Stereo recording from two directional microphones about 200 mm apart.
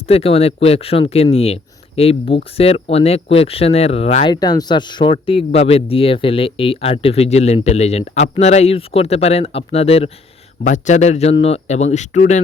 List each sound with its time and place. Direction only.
0.0 s speech: 30° left (ahead or behind)